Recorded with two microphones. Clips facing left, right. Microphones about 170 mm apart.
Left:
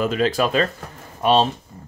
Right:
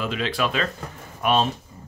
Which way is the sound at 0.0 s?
45° left (ahead or behind).